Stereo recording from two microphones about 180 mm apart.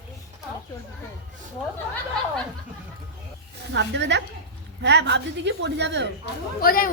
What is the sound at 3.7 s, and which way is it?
Speech, 75° right (ahead or behind).